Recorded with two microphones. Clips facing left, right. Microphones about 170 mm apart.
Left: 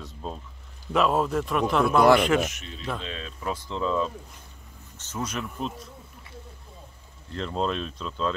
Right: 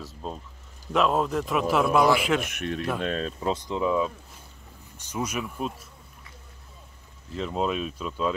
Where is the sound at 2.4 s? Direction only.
60° right (ahead or behind).